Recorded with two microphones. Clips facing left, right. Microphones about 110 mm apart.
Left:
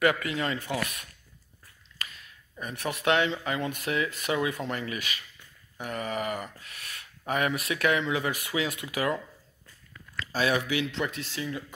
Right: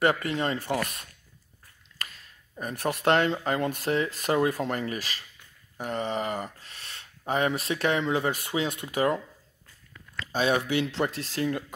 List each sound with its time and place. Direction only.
0.0 s speech: 35° right (ahead or behind)
2.0 s a sound: 40° right (ahead or behind)
2.5 s speech: 40° right (ahead or behind)
3.7 s speech: 35° right (ahead or behind)
10.2 s speech: 25° right (ahead or behind)
11.0 s speech: 40° right (ahead or behind)